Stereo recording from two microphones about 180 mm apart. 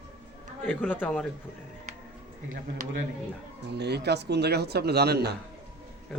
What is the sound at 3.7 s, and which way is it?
Speech, 65° right (ahead or behind).